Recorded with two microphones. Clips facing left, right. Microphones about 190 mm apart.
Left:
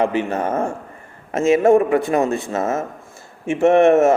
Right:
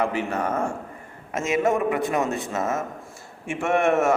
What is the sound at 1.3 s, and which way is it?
A man's voice, 30° left (ahead or behind).